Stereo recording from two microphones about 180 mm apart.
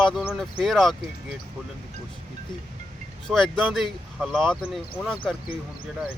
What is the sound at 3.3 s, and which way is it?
Speech, centre (ahead or behind).